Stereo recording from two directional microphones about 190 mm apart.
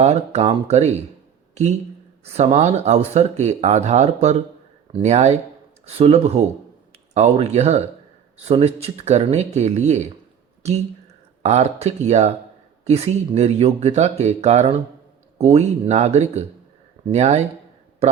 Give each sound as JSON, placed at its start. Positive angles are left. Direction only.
{"t": 0.0, "sound": "speech", "side_deg": -35}
{"t": 2.2, "sound": "speech", "side_deg": -35}